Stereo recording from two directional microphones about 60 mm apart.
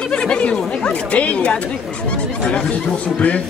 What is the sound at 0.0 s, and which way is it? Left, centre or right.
A man's voice, centre.